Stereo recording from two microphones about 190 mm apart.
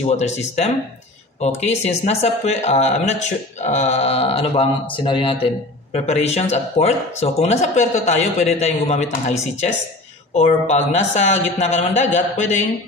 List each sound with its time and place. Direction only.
0.0 s speech: 35° left (ahead or behind)